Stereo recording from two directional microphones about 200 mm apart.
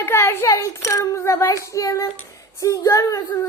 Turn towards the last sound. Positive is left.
turn(degrees=20)  # may be behind; listen again after turning